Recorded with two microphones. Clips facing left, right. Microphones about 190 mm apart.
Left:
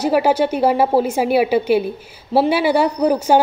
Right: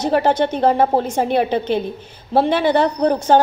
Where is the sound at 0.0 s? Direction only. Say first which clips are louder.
Left 1 dB; 10° left (ahead or behind).